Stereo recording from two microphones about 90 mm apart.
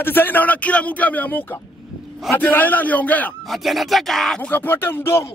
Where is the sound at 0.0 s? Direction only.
25° left (ahead or behind).